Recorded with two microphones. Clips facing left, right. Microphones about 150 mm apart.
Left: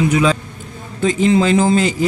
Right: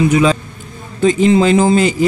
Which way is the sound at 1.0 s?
20° right (ahead or behind).